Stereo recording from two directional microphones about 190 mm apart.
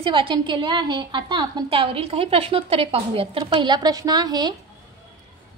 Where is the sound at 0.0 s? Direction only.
25° right (ahead or behind).